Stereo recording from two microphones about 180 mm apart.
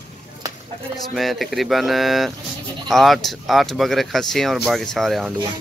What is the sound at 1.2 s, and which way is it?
Speech, centre (ahead or behind).